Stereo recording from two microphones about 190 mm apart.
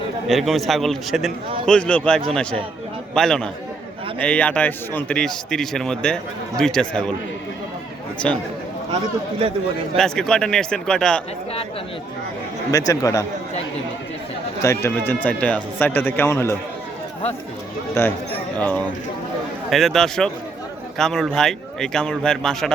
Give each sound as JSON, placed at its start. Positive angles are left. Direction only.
{"t": 0.3, "sound": "a man's voice", "side_deg": 0}
{"t": 8.2, "sound": "a man's voice", "side_deg": 5}
{"t": 10.0, "sound": "a man's voice", "side_deg": 5}
{"t": 12.9, "sound": "speech", "side_deg": 15}
{"t": 14.6, "sound": "speech", "side_deg": 15}
{"t": 18.0, "sound": "a man's voice", "side_deg": 15}